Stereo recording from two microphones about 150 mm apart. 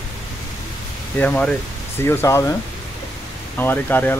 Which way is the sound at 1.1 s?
10° left (ahead or behind).